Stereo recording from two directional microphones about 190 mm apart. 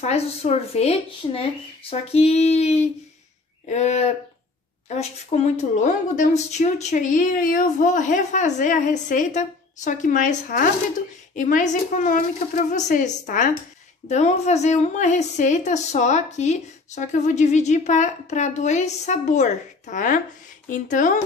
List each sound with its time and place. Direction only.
0.0 s a woman's voice: 35° left (ahead or behind)